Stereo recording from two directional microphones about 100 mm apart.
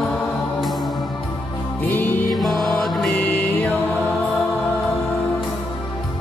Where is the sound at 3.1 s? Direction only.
15° left (ahead or behind).